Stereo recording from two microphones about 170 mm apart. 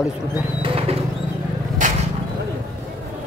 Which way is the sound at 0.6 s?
35° right (ahead or behind).